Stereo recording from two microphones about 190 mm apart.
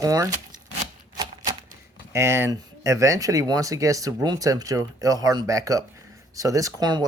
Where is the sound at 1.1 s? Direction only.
20° right (ahead or behind).